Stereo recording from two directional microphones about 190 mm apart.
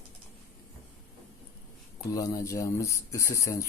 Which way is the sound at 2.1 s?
20° left (ahead or behind).